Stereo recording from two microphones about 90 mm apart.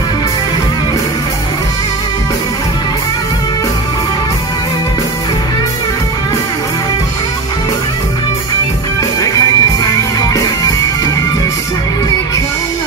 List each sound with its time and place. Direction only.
9.2 s music: 40° left (ahead or behind)